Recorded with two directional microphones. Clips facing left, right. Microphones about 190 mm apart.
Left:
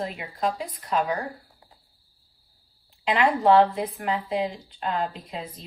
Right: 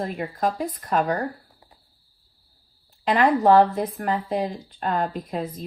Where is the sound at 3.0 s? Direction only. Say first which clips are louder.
Right 3 dB; 50° right (ahead or behind).